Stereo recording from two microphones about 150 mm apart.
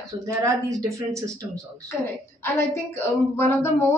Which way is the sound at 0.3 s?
20° right (ahead or behind).